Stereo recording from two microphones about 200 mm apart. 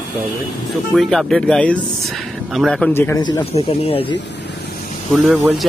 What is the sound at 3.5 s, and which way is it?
Speech, 30° left (ahead or behind).